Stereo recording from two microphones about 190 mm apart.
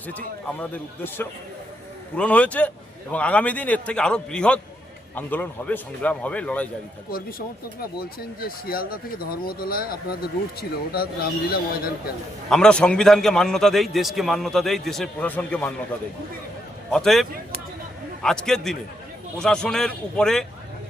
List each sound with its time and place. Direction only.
0.4 s a man's voice: 10° left (ahead or behind)
7.1 s speech: 50° left (ahead or behind)
12.5 s a man's voice: 5° left (ahead or behind)
16.9 s a man's voice: centre (ahead or behind)